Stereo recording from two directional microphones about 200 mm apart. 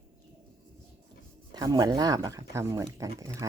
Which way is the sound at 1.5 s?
20° right (ahead or behind).